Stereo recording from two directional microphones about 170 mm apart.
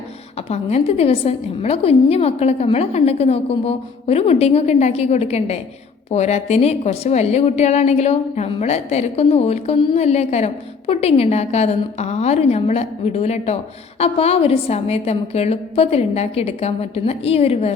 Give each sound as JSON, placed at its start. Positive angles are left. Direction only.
{"t": 0.5, "sound": "a woman's voice", "side_deg": 35}